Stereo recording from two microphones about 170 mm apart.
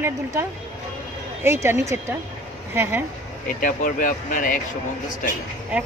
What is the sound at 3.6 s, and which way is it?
Speech, 50° left (ahead or behind).